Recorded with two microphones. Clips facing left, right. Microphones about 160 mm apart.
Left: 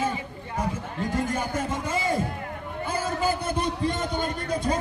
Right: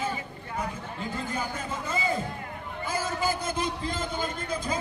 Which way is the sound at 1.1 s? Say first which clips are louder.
Left 6 dB; 80° left.